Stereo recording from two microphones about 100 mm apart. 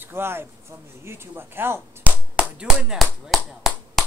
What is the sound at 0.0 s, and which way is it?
Speech, 25° right (ahead or behind).